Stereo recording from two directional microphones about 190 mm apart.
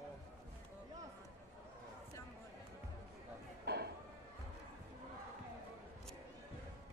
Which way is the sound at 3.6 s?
60° right (ahead or behind).